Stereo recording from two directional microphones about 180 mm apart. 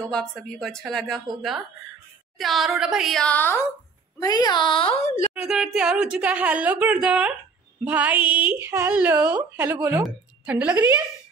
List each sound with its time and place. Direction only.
0.1 s speech: 5° left (ahead or behind)
4.2 s a woman's voice: 20° left (ahead or behind); by 5.3 s 40° left (ahead or behind)
5.3 s a woman's voice: 5° right (ahead or behind)